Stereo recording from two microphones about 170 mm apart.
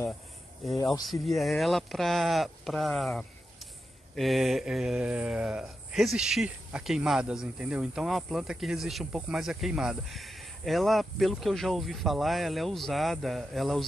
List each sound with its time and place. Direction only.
1.2 s speech: centre (ahead or behind)